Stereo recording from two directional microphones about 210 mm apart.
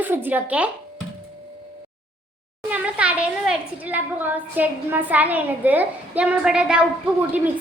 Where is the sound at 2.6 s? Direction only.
5° right (ahead or behind).